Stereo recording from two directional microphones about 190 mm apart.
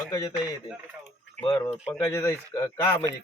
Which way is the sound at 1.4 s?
20° left (ahead or behind).